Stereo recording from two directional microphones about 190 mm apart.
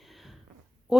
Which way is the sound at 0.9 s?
5° right (ahead or behind).